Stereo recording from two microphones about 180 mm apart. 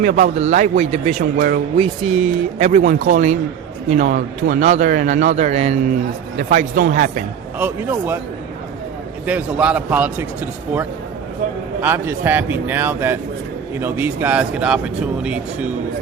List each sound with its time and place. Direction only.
0.0 s a man's voice: 50° right (ahead or behind)
1.4 s speech: 55° right (ahead or behind)
1.8 s a man's voice: 35° right (ahead or behind)
7.6 s speech: 10° right (ahead or behind)
9.2 s speech: 5° right (ahead or behind)
11.8 s speech: 10° right (ahead or behind)